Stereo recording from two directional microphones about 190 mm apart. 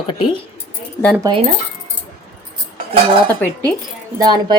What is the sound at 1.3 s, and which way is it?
Speech, 20° right (ahead or behind).